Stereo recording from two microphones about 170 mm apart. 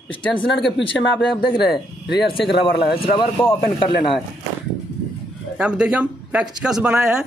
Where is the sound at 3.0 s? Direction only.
35° left (ahead or behind).